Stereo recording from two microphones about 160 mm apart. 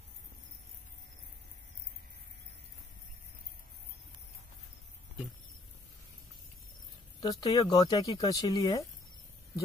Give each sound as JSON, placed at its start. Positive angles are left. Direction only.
{"t": 7.2, "sound": "speech", "side_deg": 25}